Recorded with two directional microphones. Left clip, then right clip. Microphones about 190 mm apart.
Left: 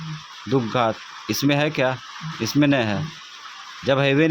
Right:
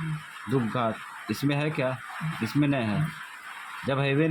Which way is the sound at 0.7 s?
35° left (ahead or behind).